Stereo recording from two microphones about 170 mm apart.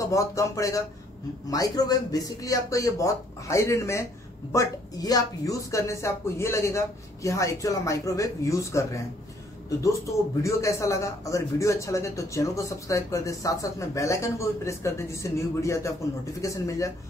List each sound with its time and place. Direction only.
0.0 s a man's voice: 20° left (ahead or behind)
10.4 s a man's voice: 15° left (ahead or behind)